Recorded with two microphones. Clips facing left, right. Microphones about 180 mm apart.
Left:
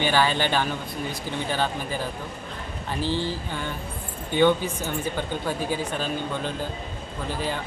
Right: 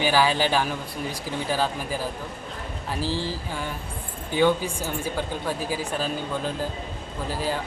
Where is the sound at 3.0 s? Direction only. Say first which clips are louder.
Left 2 dB; 35° right (ahead or behind).